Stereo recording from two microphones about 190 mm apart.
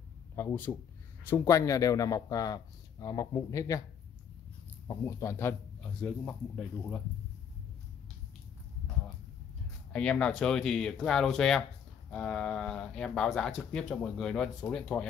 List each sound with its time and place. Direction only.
0.4 s speech: 10° left (ahead or behind)
4.8 s speech: 15° left (ahead or behind)
9.9 s speech: 5° left (ahead or behind)